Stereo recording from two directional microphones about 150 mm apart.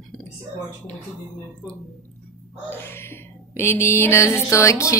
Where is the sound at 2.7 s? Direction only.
15° left (ahead or behind).